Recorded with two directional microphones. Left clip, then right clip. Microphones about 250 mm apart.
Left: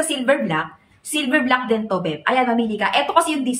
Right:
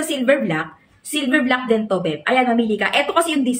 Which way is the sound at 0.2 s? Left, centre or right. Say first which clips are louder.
Right 3 dB; centre.